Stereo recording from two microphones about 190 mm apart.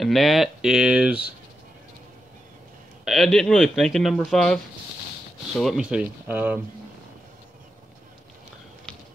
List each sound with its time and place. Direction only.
0.0 s speech: centre (ahead or behind)
3.1 s speech: centre (ahead or behind)